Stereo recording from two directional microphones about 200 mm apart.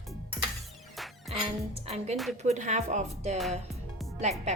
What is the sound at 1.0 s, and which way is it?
Music, centre (ahead or behind).